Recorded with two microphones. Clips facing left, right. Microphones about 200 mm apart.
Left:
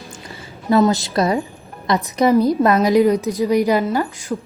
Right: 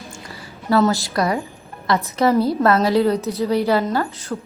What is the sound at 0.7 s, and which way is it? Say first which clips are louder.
A woman's voice: left 2 dB; 20° left (ahead or behind).